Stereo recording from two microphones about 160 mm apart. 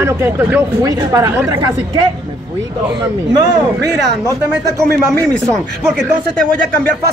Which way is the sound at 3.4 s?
20° right (ahead or behind).